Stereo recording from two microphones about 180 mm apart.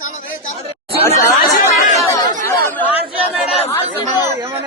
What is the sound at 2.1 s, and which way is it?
Chatter, 20° left (ahead or behind).